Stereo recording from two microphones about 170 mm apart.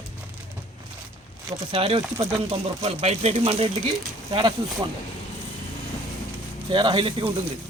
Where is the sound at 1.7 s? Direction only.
35° right (ahead or behind).